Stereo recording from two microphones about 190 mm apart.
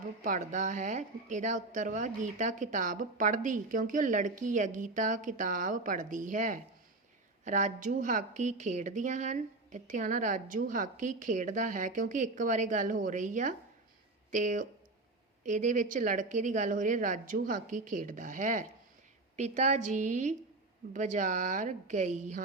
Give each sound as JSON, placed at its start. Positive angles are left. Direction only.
{"t": 0.2, "sound": "a woman's voice", "side_deg": -40}